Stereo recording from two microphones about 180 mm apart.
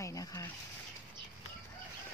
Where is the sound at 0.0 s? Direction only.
20° left (ahead or behind).